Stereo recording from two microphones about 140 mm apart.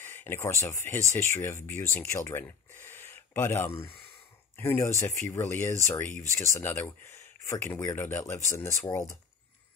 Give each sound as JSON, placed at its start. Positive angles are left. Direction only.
{"t": 0.0, "sound": "speech", "side_deg": 15}